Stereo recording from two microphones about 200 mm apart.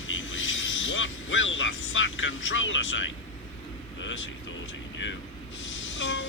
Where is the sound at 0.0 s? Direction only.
75° left (ahead or behind).